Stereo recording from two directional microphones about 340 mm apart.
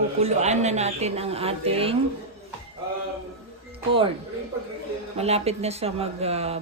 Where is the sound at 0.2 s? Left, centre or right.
Centre.